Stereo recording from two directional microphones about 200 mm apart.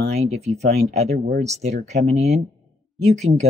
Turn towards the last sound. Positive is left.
turn(degrees=-35)  # may be behind; listen again after turning